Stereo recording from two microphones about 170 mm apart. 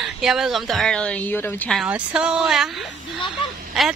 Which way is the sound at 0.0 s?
Centre (ahead or behind).